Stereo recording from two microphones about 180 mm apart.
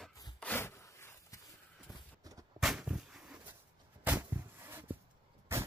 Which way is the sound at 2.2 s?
20° right (ahead or behind).